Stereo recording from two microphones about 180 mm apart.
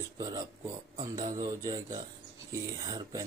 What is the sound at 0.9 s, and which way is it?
Speech, 20° right (ahead or behind).